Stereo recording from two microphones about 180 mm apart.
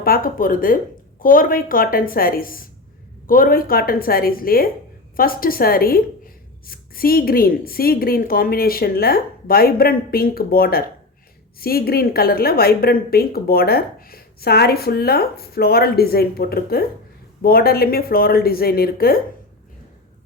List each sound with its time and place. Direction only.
0.0 s a woman's voice: 55° left (ahead or behind)